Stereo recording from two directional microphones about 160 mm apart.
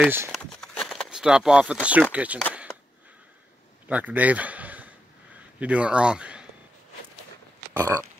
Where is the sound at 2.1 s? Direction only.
10° right (ahead or behind).